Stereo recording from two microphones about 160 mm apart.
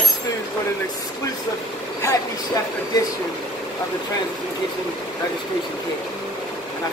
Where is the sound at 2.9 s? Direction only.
25° left (ahead or behind).